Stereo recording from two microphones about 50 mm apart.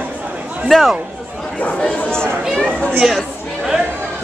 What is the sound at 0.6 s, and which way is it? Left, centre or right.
Speech, centre.